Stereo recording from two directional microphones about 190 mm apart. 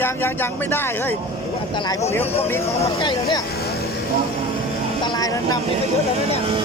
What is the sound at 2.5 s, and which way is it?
Speech, 15° left (ahead or behind).